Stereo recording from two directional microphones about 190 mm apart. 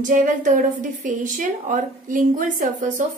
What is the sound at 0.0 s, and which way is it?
A woman's voice, 45° right (ahead or behind).